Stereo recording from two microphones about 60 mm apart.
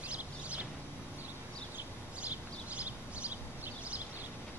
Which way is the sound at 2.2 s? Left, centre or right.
Right.